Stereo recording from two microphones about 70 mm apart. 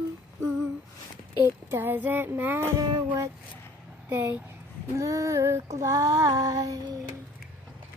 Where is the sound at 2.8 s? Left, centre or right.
Right.